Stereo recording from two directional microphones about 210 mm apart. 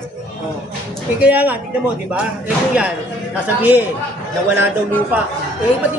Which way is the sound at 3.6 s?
10° right (ahead or behind).